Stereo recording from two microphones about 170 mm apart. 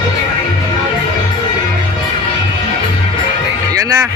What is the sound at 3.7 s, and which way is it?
Music, 20° right (ahead or behind).